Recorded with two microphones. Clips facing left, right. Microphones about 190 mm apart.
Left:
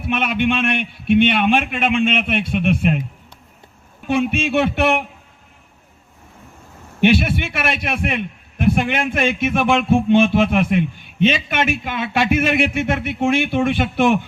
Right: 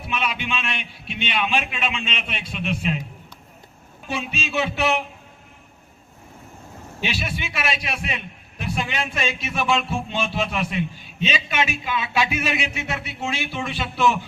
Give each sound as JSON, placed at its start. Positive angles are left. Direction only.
{"t": 0.1, "sound": "a man's voice", "side_deg": 55}
{"t": 4.1, "sound": "a man's voice", "side_deg": 55}
{"t": 7.0, "sound": "a man's voice", "side_deg": 55}